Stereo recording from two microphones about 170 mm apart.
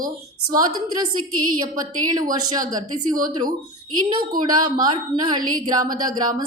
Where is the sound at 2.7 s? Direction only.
20° right (ahead or behind).